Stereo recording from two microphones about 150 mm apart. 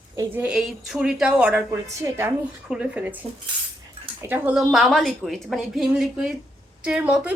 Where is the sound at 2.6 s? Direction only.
5° right (ahead or behind).